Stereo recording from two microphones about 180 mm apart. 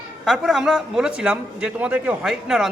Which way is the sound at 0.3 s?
Centre (ahead or behind).